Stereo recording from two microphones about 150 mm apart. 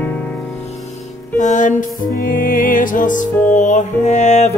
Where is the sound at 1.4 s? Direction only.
55° left (ahead or behind).